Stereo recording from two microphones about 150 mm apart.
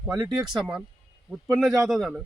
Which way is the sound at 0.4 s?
5° right (ahead or behind).